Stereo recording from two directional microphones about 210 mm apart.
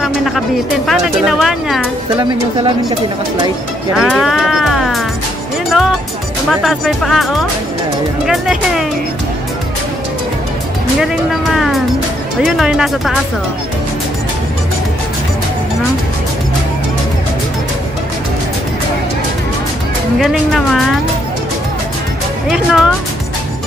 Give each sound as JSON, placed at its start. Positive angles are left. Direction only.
{"t": 0.0, "sound": "music", "side_deg": 0}
{"t": 0.8, "sound": "speech", "side_deg": 0}
{"t": 3.9, "sound": "music", "side_deg": 0}
{"t": 6.6, "sound": "speech", "side_deg": 0}
{"t": 11.0, "sound": "speech", "side_deg": 0}
{"t": 20.2, "sound": "speech", "side_deg": 0}
{"t": 22.5, "sound": "speech", "side_deg": 0}